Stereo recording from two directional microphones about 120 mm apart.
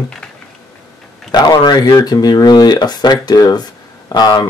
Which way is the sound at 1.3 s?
35° left (ahead or behind).